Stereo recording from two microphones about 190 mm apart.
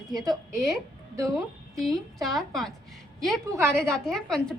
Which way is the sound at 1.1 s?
15° right (ahead or behind).